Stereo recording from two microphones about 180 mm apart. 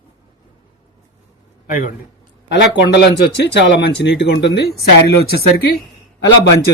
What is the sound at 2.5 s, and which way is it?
Speech, 75° left (ahead or behind).